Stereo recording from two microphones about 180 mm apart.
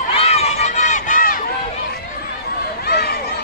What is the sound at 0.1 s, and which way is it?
Run, 35° left (ahead or behind).